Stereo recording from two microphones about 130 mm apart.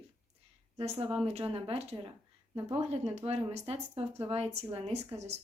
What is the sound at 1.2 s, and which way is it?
Speech, 50° right (ahead or behind).